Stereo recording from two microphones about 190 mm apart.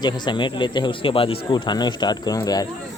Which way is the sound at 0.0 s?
25° left (ahead or behind).